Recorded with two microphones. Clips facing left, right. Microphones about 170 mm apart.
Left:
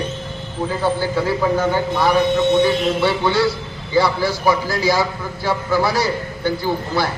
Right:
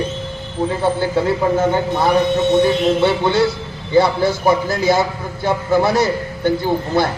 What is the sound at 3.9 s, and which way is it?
Speech, 25° right (ahead or behind).